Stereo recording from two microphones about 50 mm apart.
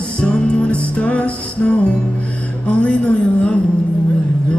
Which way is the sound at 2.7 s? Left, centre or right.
Left.